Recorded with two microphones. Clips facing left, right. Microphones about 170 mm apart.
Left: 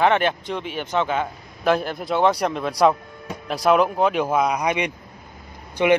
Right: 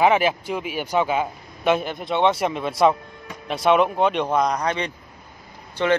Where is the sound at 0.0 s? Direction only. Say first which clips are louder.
Right 1 dB; 5° right (ahead or behind).